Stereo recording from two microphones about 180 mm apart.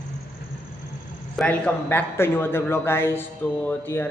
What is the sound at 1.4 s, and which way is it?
Speech, 5° left (ahead or behind).